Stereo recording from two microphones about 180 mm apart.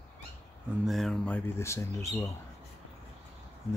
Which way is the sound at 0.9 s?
Centre (ahead or behind).